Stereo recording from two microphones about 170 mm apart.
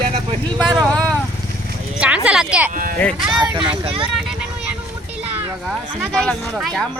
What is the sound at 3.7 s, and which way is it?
Speech, 30° right (ahead or behind).